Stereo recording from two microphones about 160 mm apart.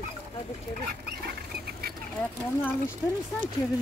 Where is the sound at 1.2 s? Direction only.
75° right (ahead or behind).